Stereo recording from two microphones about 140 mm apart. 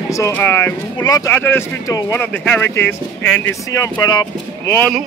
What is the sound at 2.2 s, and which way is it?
Speech, 10° left (ahead or behind).